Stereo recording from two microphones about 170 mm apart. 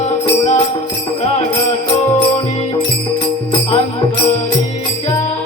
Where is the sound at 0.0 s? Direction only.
40° left (ahead or behind).